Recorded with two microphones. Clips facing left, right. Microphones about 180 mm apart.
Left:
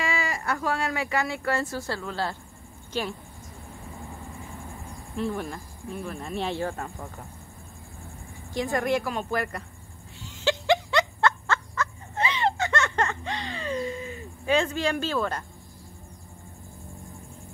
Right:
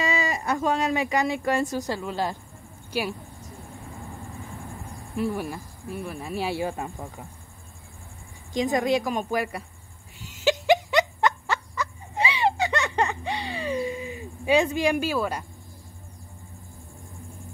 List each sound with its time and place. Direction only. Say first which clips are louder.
0.0 s speech: right 3 dB; 20° right (ahead or behind)
5.1 s speech: right 2 dB; 10° right (ahead or behind)
8.5 s speech: right 3 dB; 15° right (ahead or behind)
10.2 s a sound: right 3 dB; 20° right (ahead or behind)